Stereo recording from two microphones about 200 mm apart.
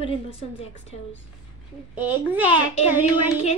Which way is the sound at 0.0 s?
30° left (ahead or behind).